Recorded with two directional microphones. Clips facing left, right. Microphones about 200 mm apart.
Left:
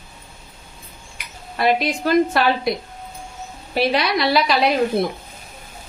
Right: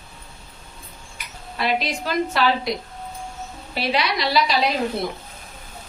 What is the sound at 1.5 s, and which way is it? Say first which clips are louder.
Speech: left 5 dB; 50° left (ahead or behind).